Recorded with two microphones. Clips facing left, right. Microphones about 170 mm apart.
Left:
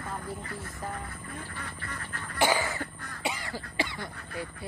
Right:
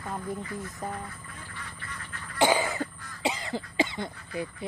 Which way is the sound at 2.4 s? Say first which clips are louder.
Right 3 dB; 15° right (ahead or behind).